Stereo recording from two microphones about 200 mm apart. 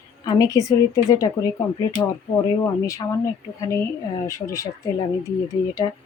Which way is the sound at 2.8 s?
15° left (ahead or behind).